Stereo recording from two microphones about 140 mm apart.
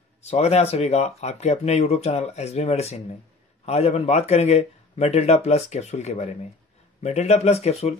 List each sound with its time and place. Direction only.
0.2 s speech: 50° left (ahead or behind)